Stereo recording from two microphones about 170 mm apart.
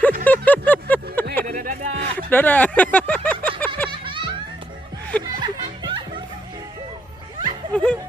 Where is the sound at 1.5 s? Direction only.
55° right (ahead or behind).